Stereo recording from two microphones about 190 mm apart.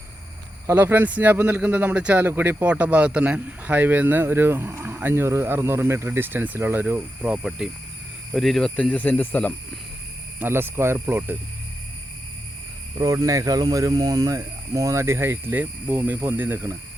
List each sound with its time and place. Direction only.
0.7 s speech: 10° right (ahead or behind); by 9.5 s 5° left (ahead or behind)
10.4 s speech: 10° right (ahead or behind)
13.0 s speech: 15° right (ahead or behind)